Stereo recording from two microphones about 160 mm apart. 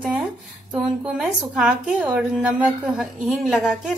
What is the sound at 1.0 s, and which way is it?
A woman's voice, 5° right (ahead or behind).